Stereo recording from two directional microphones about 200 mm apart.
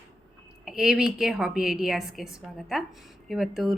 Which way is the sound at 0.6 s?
5° right (ahead or behind).